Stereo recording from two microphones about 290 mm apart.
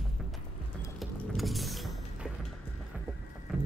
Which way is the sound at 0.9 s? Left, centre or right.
Centre.